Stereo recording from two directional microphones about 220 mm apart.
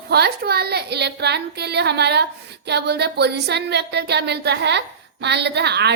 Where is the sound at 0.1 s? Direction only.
45° right (ahead or behind).